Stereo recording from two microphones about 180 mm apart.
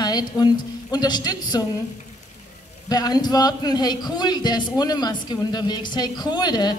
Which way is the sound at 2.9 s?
20° left (ahead or behind).